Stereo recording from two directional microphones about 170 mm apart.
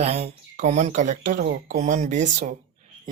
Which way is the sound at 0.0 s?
40° right (ahead or behind).